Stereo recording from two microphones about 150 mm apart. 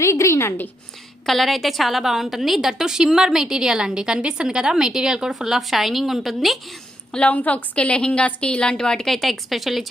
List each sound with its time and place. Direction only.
0.0 s a woman's voice: 20° left (ahead or behind)
1.3 s a woman's voice: centre (ahead or behind)